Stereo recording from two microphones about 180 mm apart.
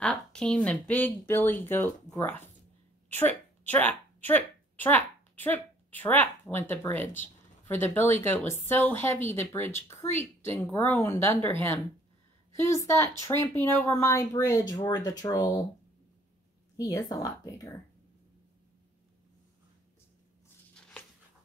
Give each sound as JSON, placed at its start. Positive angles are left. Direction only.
{"t": 0.0, "sound": "speech", "side_deg": 5}
{"t": 16.7, "sound": "a woman's voice", "side_deg": 20}